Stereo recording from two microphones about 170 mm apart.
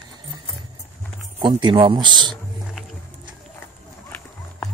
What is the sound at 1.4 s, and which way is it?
Speech, 25° right (ahead or behind).